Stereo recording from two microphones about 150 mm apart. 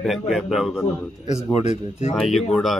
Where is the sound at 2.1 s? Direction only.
Centre (ahead or behind).